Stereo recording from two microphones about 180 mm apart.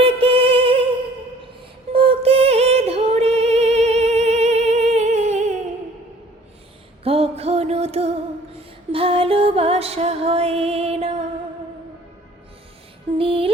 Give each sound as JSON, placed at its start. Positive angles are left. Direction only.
{"t": 0.0, "sound": "music", "side_deg": -30}
{"t": 1.9, "sound": "music", "side_deg": -30}
{"t": 7.0, "sound": "music", "side_deg": -35}
{"t": 13.1, "sound": "music", "side_deg": -30}